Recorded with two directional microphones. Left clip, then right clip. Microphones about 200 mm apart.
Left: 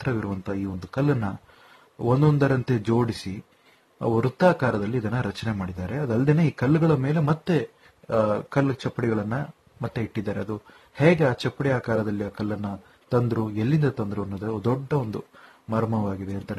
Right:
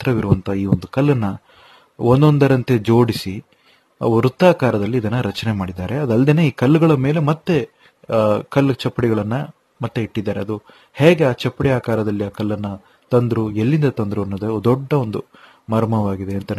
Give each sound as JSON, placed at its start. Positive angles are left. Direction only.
{"t": 0.0, "sound": "speech", "side_deg": -45}
{"t": 4.0, "sound": "speech", "side_deg": -50}
{"t": 15.8, "sound": "speech", "side_deg": -55}